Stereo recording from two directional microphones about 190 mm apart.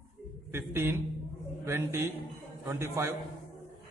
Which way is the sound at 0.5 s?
15° right (ahead or behind).